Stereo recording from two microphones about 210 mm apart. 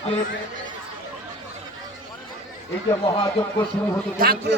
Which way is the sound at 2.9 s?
20° left (ahead or behind).